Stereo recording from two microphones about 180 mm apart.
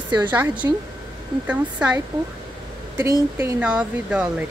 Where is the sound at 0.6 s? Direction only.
15° right (ahead or behind).